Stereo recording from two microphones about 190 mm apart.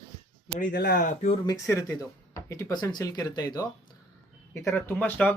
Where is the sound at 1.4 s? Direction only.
15° left (ahead or behind).